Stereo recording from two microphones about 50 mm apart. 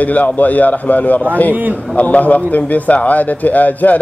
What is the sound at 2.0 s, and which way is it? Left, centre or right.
Speech, left.